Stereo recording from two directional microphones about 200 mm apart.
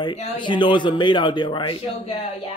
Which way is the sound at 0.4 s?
25° left (ahead or behind).